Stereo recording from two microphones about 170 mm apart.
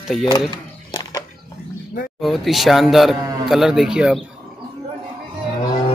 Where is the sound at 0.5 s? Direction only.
25° left (ahead or behind).